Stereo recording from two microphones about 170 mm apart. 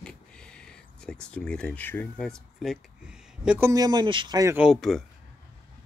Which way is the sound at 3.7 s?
25° right (ahead or behind).